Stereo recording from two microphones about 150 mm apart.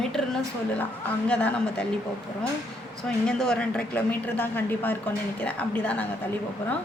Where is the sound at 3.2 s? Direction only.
5° left (ahead or behind).